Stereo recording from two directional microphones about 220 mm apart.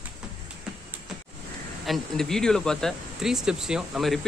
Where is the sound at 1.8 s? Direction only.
Centre (ahead or behind).